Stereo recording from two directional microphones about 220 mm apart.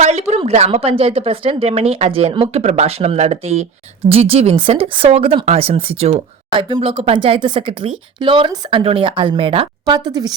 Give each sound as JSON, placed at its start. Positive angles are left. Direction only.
{"t": 0.0, "sound": "speech", "side_deg": -30}